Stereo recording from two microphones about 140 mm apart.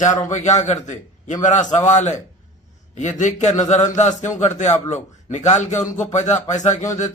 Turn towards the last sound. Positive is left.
turn(degrees=60)  # may be behind; listen again after turning